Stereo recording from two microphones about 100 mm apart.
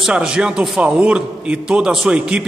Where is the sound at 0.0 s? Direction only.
10° right (ahead or behind).